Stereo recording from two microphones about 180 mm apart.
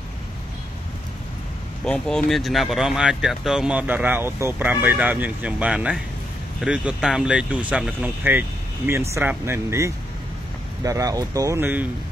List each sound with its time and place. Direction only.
1.9 s speech: 5° left (ahead or behind)